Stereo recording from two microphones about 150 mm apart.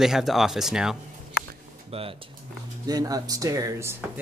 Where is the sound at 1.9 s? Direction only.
40° right (ahead or behind).